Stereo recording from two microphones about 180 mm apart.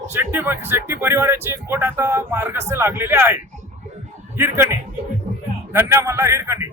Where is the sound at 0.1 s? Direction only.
10° right (ahead or behind).